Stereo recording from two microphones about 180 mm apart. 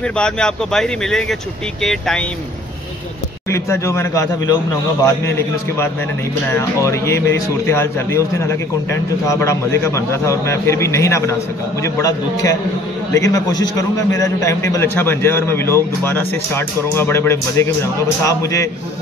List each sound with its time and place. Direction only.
0.2 s speech: 5° left (ahead or behind)
3.4 s speech: 15° left (ahead or behind)
6.5 s a man's voice: 15° left (ahead or behind)